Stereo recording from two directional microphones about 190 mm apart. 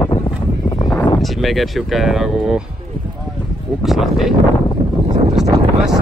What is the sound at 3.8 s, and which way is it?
Speech, centre (ahead or behind).